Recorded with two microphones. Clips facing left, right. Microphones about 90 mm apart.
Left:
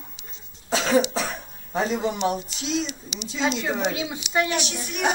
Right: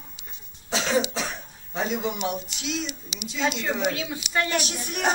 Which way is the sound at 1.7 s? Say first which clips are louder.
Left 3 dB; 35° left (ahead or behind).